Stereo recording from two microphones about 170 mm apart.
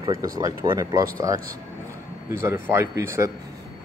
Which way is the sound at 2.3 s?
15° right (ahead or behind).